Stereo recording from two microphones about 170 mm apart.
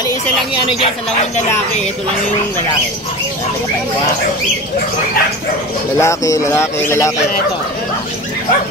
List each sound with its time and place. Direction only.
5.9 s speech: 15° left (ahead or behind)